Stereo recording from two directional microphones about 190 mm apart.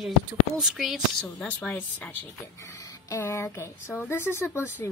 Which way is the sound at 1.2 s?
5° left (ahead or behind).